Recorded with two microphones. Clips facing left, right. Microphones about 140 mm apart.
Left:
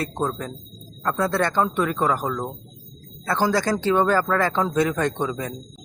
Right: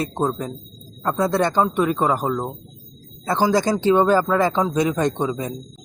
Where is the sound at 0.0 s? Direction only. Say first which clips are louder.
Right 3 dB; 20° right (ahead or behind).